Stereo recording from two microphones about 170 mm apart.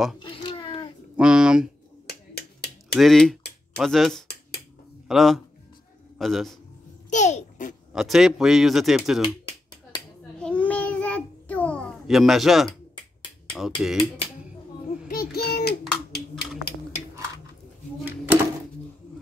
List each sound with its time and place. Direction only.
0.2 s a sound: 30° left (ahead or behind)
1.1 s speech: 5° right (ahead or behind)
2.0 s finger snapping: 70° left (ahead or behind)
3.0 s a man's voice: centre (ahead or behind)
7.1 s babbling: 45° left (ahead or behind)
7.9 s speech: centre (ahead or behind)
9.9 s a sound: 25° left (ahead or behind)
10.4 s child singing: 5° left (ahead or behind)
12.9 s finger snapping: 30° left (ahead or behind)
13.7 s speech: centre (ahead or behind)
15.0 s child singing: 65° left (ahead or behind)
18.0 s drawer open or close: 10° right (ahead or behind)